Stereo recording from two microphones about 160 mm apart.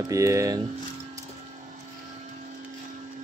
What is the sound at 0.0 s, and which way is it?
Speech, 20° right (ahead or behind).